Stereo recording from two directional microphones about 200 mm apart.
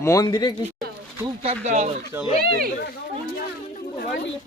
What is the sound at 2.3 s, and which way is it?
Speech, 50° right (ahead or behind).